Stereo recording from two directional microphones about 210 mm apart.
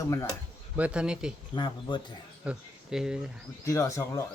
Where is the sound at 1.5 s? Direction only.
20° left (ahead or behind).